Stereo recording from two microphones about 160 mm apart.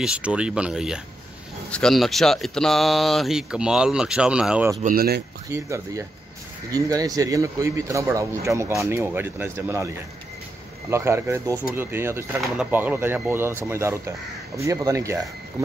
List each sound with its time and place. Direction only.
0.0 s speech: 5° right (ahead or behind)
4.8 s speech: 70° right (ahead or behind)
5.5 s speech: 20° right (ahead or behind)